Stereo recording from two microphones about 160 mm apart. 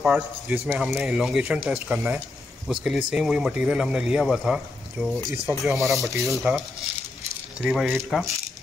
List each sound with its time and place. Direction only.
0.0 s speech: 10° right (ahead or behind)
5.6 s speech: centre (ahead or behind)
5.9 s speech: 20° right (ahead or behind)
7.6 s speech: centre (ahead or behind)